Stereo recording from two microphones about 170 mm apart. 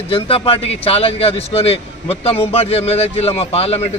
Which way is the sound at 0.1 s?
35° left (ahead or behind).